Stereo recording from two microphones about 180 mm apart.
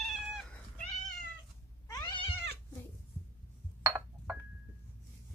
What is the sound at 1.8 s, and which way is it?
Cat, 20° left (ahead or behind).